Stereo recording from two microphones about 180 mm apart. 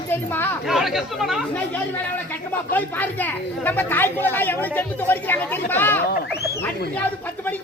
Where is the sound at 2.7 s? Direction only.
10° left (ahead or behind).